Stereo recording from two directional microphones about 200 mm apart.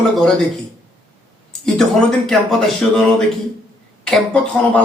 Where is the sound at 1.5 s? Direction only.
5° left (ahead or behind).